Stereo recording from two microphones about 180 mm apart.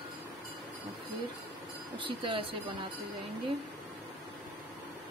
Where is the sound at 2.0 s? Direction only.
30° right (ahead or behind).